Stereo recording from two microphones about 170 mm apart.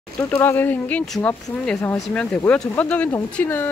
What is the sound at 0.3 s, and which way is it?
Speech, 10° left (ahead or behind).